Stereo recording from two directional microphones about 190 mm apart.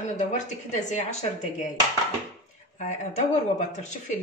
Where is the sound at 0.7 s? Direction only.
40° left (ahead or behind).